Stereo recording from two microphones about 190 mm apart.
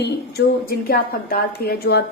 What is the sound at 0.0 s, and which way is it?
A woman's voice, 55° left (ahead or behind).